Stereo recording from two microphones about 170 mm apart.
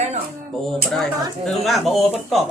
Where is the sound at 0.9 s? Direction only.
Centre (ahead or behind).